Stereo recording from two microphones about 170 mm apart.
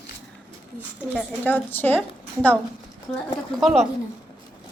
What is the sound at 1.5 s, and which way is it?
Speech, 10° left (ahead or behind).